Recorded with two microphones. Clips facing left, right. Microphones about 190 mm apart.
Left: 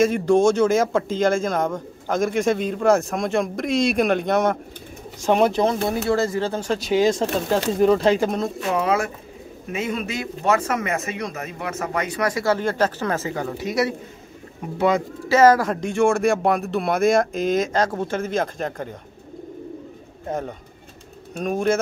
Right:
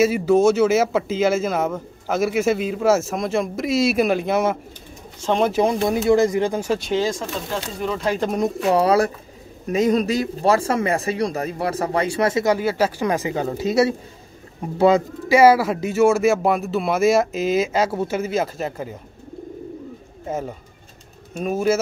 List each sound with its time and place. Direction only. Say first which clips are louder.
0.0 s a man's voice: right 1 dB; 5° right (ahead or behind)
5.2 s speech: left 2 dB; 10° left (ahead or behind)
5.5 s speech: right 2 dB; 10° right (ahead or behind)
6.9 s speech: left 6 dB; 15° left (ahead or behind)
7.8 s speech: left 10 dB; 40° left (ahead or behind)
8.2 s a man's voice: left 1 dB; 5° left (ahead or behind)
8.6 s speech: right 5 dB; 35° right (ahead or behind)
12.5 s speech: right 1 dB; 10° right (ahead or behind); by 15.0 s 30° right (ahead or behind)
15.2 s a man's voice: right 1 dB; 10° right (ahead or behind)
20.2 s a man's voice: right 1 dB; 5° right (ahead or behind)